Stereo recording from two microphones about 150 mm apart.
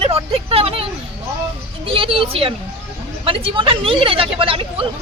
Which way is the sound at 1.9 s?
35° right (ahead or behind).